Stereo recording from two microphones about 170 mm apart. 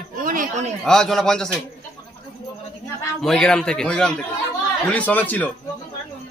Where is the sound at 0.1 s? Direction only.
50° right (ahead or behind).